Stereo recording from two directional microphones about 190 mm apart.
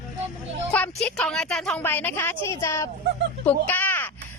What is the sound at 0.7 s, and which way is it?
A woman's voice, 5° left (ahead or behind).